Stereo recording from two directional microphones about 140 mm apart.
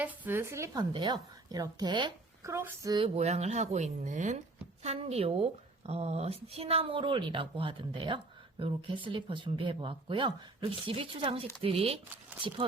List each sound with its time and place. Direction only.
0.0 s speech: 10° right (ahead or behind); by 2.1 s 35° right (ahead or behind)
2.4 s speech: 20° right (ahead or behind)
3.2 s speech: 50° right (ahead or behind)